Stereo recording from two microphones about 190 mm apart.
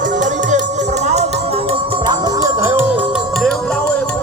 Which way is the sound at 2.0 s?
20° right (ahead or behind).